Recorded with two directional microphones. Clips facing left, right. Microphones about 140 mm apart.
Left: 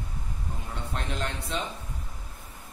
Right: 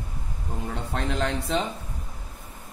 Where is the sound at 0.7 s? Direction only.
85° right.